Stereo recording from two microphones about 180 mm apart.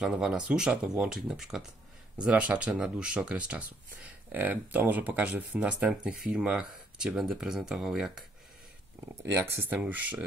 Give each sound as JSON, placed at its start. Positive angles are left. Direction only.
{"t": 0.0, "sound": "speech", "side_deg": -5}
{"t": 9.3, "sound": "speech", "side_deg": -10}